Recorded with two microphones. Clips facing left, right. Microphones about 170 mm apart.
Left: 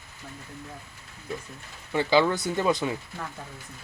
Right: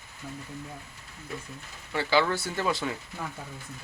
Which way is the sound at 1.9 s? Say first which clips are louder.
Left 3 dB; 20° left (ahead or behind).